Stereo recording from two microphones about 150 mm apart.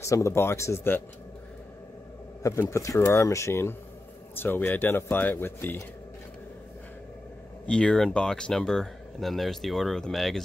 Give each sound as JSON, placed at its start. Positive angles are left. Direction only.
{"t": 0.0, "sound": "speech", "side_deg": 20}
{"t": 2.4, "sound": "speech", "side_deg": 20}
{"t": 7.6, "sound": "speech", "side_deg": 5}